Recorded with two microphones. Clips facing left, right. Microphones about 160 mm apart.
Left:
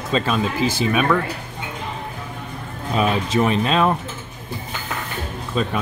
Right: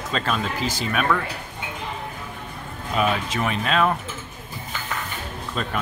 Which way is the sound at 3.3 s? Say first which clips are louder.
Left 6 dB; 30° left (ahead or behind).